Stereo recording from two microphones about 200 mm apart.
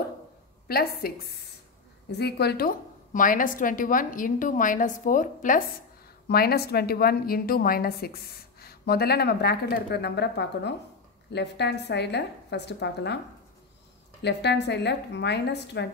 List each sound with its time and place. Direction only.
0.7 s a woman's voice: 50° left (ahead or behind)
6.2 s a woman's voice: 50° left (ahead or behind)
14.2 s a woman's voice: 60° left (ahead or behind)